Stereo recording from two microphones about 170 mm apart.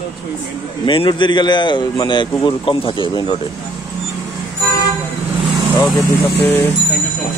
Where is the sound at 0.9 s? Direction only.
30° left (ahead or behind).